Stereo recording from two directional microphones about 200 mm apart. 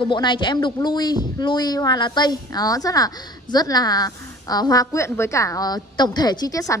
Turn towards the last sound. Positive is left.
turn(degrees=15)  # may be behind; listen again after turning